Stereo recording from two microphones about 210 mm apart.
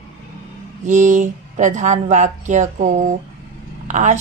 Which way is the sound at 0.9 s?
35° right (ahead or behind).